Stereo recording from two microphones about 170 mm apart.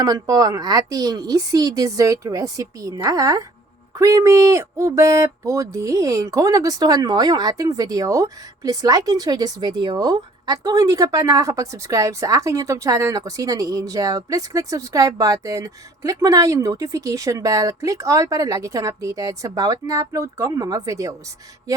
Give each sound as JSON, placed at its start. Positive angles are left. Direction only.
{"t": 0.0, "sound": "speech", "side_deg": -20}